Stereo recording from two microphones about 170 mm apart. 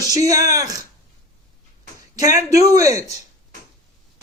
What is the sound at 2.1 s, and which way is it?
Speech, 20° right (ahead or behind).